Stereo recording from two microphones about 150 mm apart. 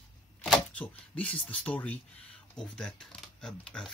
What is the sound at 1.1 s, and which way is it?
Speech, 5° left (ahead or behind).